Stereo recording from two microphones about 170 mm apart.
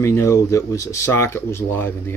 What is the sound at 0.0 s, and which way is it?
Speech, 15° left (ahead or behind).